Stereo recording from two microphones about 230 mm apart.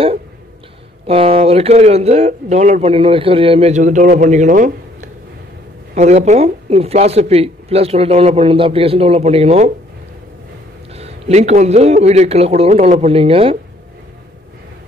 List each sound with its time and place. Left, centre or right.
1.0 s a man's voice: right
11.0 s a man's voice: right